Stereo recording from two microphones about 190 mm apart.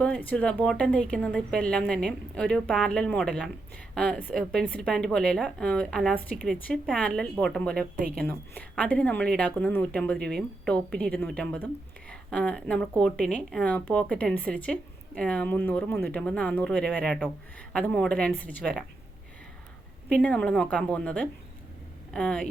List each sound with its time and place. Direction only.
0.0 s a woman's voice: 10° left (ahead or behind)
7.9 s a woman's voice: 50° right (ahead or behind)
8.2 s a woman's voice: 5° left (ahead or behind)
20.1 s a woman's voice: 5° left (ahead or behind)